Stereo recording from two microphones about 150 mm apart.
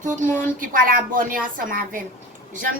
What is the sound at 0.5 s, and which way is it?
A woman's voice, 65° right (ahead or behind).